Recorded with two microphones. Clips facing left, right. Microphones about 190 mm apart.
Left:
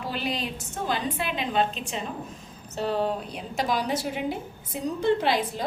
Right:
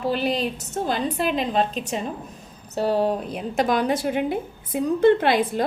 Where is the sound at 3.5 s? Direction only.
55° right (ahead or behind).